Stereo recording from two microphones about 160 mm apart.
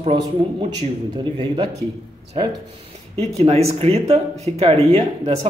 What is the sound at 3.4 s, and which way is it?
Speech, 40° right (ahead or behind).